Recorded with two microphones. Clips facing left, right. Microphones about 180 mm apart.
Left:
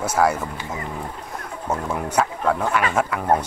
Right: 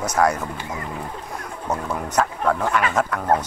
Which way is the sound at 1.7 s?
5° left (ahead or behind).